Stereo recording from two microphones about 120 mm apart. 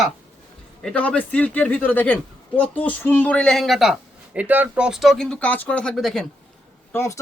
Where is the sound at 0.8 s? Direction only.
10° left (ahead or behind).